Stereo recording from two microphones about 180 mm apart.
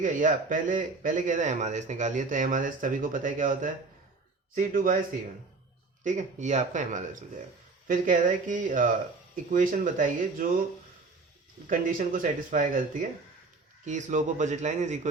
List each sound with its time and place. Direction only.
0.0 s a man's voice: 45° right (ahead or behind)
6.1 s a man's voice: 40° right (ahead or behind)
11.7 s a man's voice: 50° right (ahead or behind)
13.8 s a man's voice: 45° right (ahead or behind)